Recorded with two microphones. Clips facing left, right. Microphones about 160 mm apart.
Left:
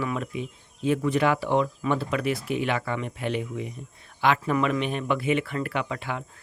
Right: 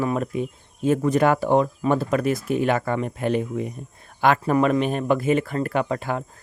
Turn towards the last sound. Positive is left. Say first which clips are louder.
# right 6 dB
turn(degrees=-40)  # may be behind; listen again after turning